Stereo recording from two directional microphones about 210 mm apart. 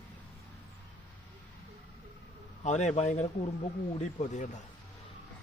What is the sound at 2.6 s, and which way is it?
A man's voice, 35° left (ahead or behind).